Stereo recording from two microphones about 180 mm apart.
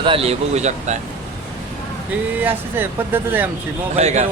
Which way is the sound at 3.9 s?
40° right (ahead or behind).